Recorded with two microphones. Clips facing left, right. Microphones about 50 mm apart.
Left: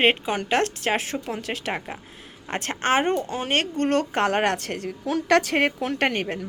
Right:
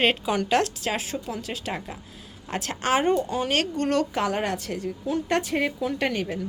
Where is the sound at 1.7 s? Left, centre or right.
Left.